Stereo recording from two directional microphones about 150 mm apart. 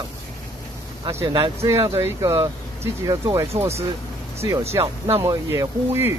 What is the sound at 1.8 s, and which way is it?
Speech, 20° right (ahead or behind).